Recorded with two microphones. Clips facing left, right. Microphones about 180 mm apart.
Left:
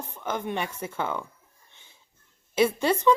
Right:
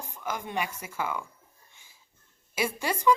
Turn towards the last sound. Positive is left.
turn(degrees=25)  # may be behind; listen again after turning